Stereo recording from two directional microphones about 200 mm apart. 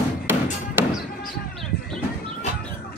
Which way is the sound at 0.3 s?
10° right (ahead or behind).